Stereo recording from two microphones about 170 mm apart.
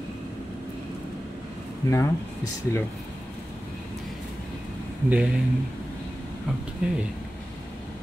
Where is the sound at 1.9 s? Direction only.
15° left (ahead or behind).